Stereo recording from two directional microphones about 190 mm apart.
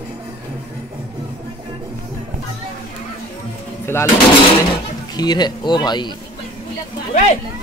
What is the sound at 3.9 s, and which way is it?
Speech, 15° left (ahead or behind).